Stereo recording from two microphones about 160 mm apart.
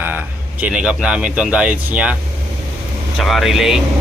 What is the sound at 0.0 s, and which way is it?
Speech, 10° right (ahead or behind).